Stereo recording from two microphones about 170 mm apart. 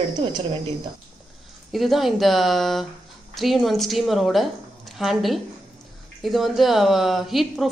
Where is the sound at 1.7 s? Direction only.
Centre (ahead or behind).